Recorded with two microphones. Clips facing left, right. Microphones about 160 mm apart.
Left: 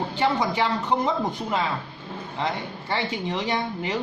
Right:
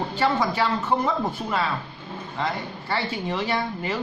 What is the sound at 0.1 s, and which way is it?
Speech, 15° left (ahead or behind).